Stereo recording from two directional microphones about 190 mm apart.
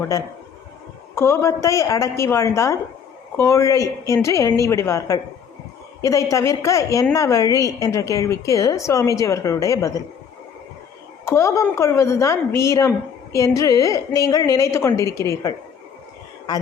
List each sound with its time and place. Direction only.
1.1 s a woman's voice: 15° left (ahead or behind)
11.3 s a woman's voice: 15° left (ahead or behind)